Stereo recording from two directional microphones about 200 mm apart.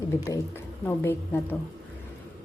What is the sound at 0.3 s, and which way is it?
A woman's voice, 10° left (ahead or behind).